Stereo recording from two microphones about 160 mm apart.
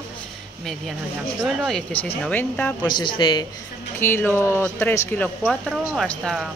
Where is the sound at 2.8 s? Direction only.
25° left (ahead or behind).